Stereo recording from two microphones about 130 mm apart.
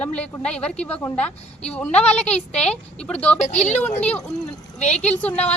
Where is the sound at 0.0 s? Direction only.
10° left (ahead or behind).